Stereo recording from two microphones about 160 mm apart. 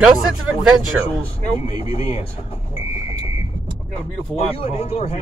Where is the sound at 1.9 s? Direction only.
40° left (ahead or behind).